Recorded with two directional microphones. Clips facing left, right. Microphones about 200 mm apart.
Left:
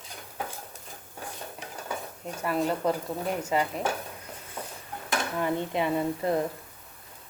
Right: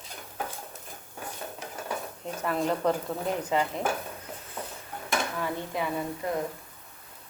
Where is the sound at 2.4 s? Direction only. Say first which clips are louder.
Even; 5° left (ahead or behind).